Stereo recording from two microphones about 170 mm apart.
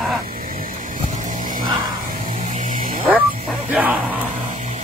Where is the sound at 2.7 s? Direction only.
55° right (ahead or behind).